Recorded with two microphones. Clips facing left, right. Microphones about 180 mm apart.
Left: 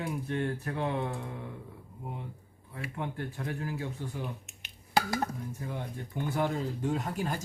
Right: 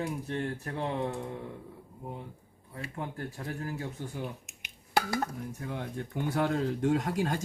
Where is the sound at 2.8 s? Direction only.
35° right (ahead or behind).